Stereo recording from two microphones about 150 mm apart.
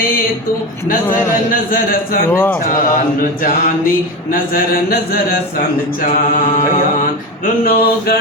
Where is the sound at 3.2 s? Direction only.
70° left (ahead or behind).